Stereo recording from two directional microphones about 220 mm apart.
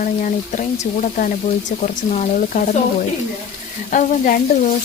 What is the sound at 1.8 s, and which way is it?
Speech, 30° left (ahead or behind).